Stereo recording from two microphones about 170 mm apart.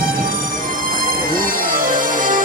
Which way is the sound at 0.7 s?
55° right (ahead or behind).